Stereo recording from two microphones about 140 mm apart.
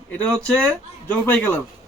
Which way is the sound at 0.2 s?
5° left (ahead or behind).